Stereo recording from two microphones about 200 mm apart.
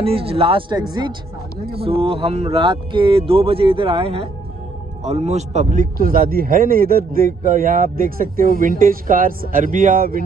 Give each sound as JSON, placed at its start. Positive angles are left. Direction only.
{"t": 0.0, "sound": "a man's voice", "side_deg": -30}